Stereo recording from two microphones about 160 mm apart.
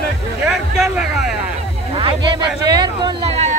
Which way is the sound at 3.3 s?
45° right (ahead or behind).